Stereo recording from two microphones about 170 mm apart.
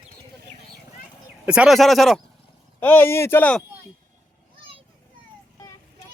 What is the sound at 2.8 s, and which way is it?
Speech, 10° left (ahead or behind).